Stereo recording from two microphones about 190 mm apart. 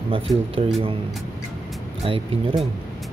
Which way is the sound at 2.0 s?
30° right (ahead or behind).